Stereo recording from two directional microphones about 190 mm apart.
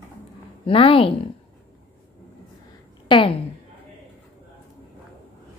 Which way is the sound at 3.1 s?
25° left (ahead or behind).